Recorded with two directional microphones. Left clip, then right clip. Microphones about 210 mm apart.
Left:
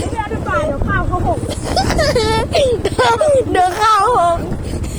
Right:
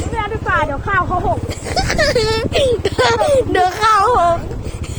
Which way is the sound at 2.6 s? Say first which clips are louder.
Even; 15° left (ahead or behind).